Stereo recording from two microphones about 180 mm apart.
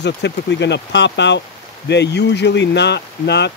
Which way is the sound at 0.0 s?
75° left (ahead or behind).